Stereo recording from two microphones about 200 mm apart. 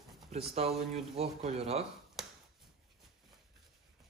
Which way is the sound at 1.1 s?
30° right (ahead or behind).